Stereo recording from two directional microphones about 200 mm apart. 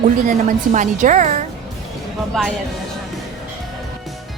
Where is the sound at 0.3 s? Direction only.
40° right (ahead or behind).